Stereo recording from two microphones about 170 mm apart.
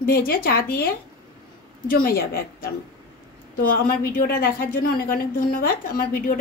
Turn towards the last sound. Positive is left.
turn(degrees=60)  # may be behind; listen again after turning